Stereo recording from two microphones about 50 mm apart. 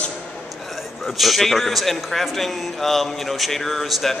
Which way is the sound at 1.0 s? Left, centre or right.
Centre.